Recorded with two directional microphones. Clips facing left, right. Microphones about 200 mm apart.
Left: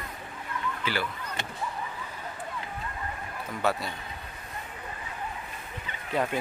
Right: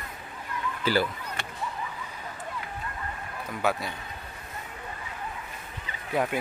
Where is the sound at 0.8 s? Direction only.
40° right (ahead or behind).